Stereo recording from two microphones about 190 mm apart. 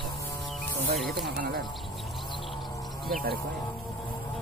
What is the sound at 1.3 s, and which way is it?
Speech, 50° right (ahead or behind).